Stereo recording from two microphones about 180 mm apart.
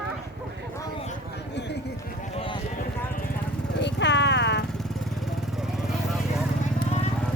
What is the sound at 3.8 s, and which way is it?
Vehicle, 75° left (ahead or behind).